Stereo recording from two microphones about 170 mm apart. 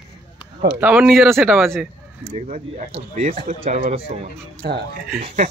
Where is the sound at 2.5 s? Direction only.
45° right (ahead or behind).